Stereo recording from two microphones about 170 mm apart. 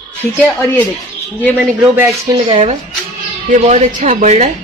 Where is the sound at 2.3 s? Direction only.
30° right (ahead or behind).